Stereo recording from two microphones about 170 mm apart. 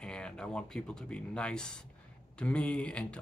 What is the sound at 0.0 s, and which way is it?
A man's voice, 5° left (ahead or behind).